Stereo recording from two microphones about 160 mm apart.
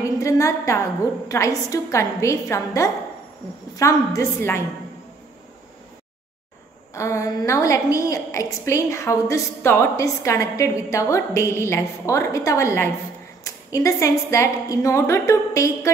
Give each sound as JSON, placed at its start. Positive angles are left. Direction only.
{"t": 0.0, "sound": "a woman's voice", "side_deg": 20}
{"t": 6.9, "sound": "a woman's voice", "side_deg": 20}